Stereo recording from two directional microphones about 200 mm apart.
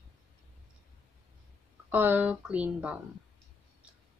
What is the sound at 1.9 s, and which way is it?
Speech, 10° right (ahead or behind).